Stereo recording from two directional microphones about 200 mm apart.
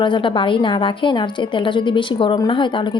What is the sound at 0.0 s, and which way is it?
A woman's voice, 25° left (ahead or behind).